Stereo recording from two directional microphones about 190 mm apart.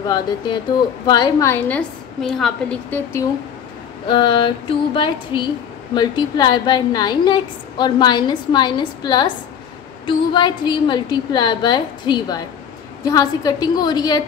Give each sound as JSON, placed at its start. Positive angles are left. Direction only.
{"t": 0.0, "sound": "a woman's voice", "side_deg": 20}
{"t": 4.1, "sound": "a woman's voice", "side_deg": 25}